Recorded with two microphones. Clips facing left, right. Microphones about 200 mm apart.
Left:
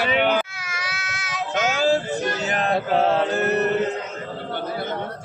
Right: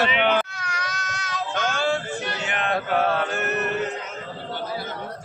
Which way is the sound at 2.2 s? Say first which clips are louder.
Left 4 dB; 40° left (ahead or behind).